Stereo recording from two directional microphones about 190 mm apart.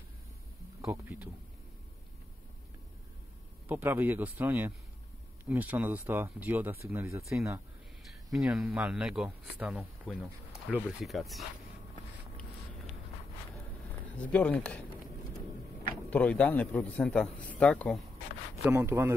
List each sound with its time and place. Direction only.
0.7 s speech: 15° right (ahead or behind)
3.6 s speech: 10° right (ahead or behind)
8.1 s speech: centre (ahead or behind)
14.1 s speech: 5° left (ahead or behind)
16.1 s speech: 5° left (ahead or behind)
18.6 s speech: 15° right (ahead or behind)